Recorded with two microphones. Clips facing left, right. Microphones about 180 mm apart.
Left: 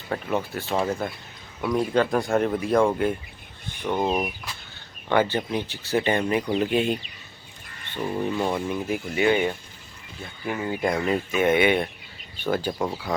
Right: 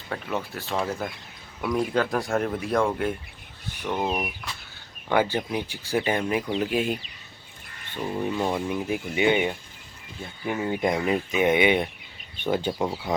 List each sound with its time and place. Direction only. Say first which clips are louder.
0.1 s speech: left 4 dB; 5° left (ahead or behind)
7.9 s speech: left 1 dB; 5° right (ahead or behind)
10.4 s speech: right 1 dB; centre (ahead or behind)
11.0 s speech: even; 15° right (ahead or behind)